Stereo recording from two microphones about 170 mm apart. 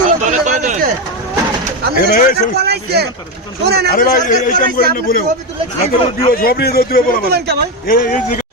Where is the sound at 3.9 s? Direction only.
55° left (ahead or behind).